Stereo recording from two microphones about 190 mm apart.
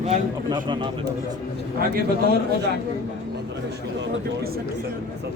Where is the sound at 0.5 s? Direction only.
25° right (ahead or behind).